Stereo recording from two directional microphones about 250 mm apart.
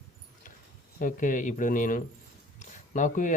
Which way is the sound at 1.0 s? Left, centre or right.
Left.